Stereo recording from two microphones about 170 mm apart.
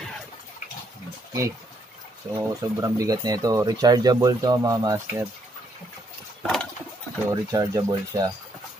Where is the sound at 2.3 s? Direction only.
20° right (ahead or behind).